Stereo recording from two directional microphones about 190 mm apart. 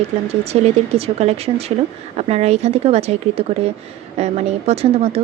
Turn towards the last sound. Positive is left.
turn(degrees=-30)  # may be behind; listen again after turning